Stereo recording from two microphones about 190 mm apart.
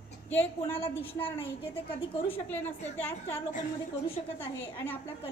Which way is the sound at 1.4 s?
30° left (ahead or behind).